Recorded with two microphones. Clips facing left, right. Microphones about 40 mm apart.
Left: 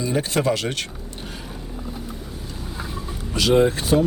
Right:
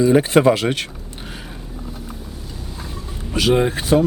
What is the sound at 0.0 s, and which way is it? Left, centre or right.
Speech, right.